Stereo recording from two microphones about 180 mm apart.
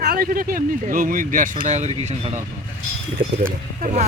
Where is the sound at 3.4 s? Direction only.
45° right (ahead or behind).